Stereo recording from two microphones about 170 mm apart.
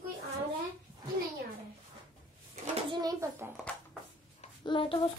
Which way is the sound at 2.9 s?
20° right (ahead or behind).